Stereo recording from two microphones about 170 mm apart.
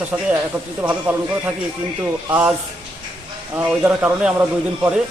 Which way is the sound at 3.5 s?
10° right (ahead or behind).